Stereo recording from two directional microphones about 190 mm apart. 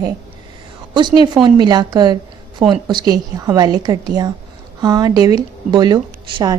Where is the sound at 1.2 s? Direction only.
25° right (ahead or behind).